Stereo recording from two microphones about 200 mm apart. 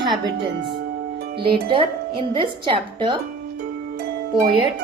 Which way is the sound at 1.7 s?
25° right (ahead or behind).